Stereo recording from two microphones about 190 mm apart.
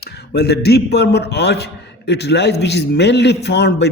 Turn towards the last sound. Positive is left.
turn(degrees=65)  # may be behind; listen again after turning